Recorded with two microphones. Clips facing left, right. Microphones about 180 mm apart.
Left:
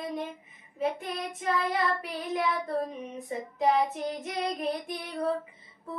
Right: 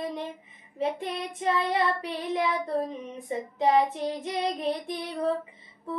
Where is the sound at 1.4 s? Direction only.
30° right (ahead or behind).